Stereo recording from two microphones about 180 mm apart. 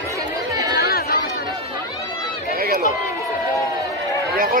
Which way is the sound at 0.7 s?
55° left (ahead or behind).